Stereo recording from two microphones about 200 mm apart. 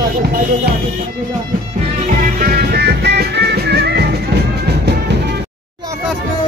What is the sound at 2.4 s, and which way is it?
Music, 50° right (ahead or behind).